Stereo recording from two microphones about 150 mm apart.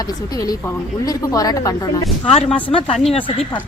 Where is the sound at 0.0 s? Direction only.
25° left (ahead or behind).